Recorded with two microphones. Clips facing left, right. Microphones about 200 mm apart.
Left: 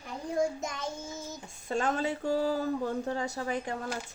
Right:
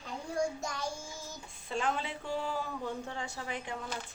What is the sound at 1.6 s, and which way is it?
Speech, 45° left (ahead or behind).